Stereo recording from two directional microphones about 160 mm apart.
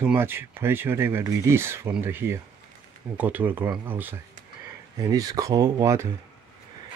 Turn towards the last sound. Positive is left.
turn(degrees=-20)  # may be behind; listen again after turning